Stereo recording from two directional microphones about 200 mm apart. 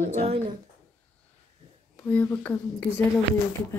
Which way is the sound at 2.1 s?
10° left (ahead or behind).